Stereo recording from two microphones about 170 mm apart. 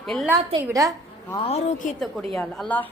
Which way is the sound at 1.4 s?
35° left (ahead or behind).